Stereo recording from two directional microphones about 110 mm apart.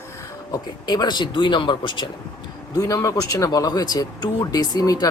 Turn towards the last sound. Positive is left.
turn(degrees=35)  # may be behind; listen again after turning